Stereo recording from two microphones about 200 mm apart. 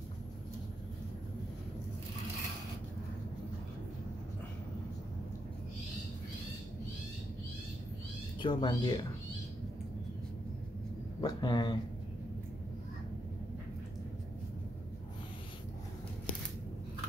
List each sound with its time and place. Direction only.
8.4 s speech: 25° left (ahead or behind)
11.1 s a man's voice: 20° left (ahead or behind)